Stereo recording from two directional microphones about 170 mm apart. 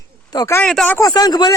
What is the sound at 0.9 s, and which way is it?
Speech, 20° left (ahead or behind).